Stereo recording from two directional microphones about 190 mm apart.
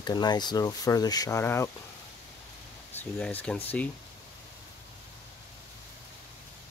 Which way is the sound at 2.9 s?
10° left (ahead or behind).